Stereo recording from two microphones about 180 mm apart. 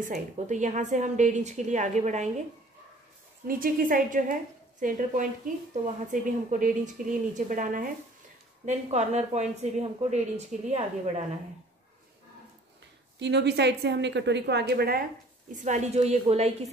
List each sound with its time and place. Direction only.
0.0 s speech: 40° right (ahead or behind)
3.4 s a woman's voice: 50° right (ahead or behind)
13.2 s a woman's voice: 70° right (ahead or behind)
15.5 s speech: 45° right (ahead or behind)